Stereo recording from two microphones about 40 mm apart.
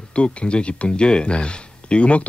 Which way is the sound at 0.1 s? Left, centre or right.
Left.